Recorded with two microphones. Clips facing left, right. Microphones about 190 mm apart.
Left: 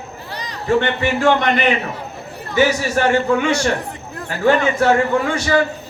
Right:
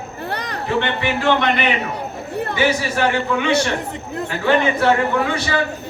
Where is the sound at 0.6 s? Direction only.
45° left (ahead or behind).